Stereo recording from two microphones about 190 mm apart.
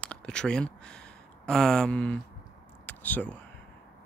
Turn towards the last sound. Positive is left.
turn(degrees=10)  # may be behind; listen again after turning